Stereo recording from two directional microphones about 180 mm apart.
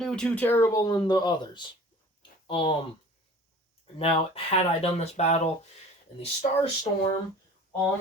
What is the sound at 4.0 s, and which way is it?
Speech, 30° left (ahead or behind).